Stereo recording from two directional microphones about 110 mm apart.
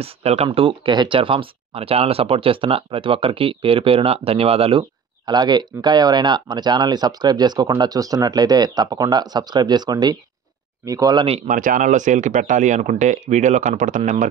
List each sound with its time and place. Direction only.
0.0 s speech: 65° right (ahead or behind)
0.5 s speech: 50° right (ahead or behind)
5.2 s speech: 40° right (ahead or behind)
11.1 s speech: 60° right (ahead or behind)
11.9 s speech: 90° right